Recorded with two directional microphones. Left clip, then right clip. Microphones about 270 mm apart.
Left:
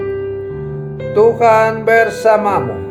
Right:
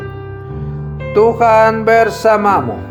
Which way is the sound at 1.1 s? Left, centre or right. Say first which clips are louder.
Even; right.